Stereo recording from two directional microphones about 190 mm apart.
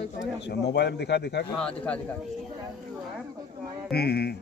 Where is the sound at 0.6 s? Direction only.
60° left (ahead or behind).